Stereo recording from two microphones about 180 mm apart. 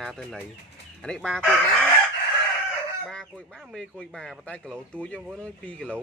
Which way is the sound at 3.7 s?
5° left (ahead or behind).